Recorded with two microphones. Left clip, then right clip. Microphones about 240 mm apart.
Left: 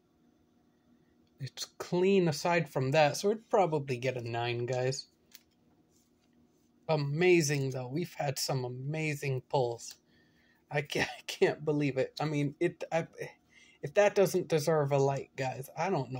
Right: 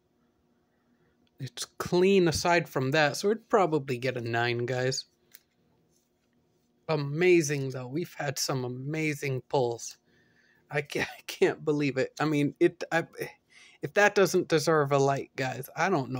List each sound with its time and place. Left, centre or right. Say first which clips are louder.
1.4 s speech: right 5 dB; centre
6.9 s speech: right 3 dB; centre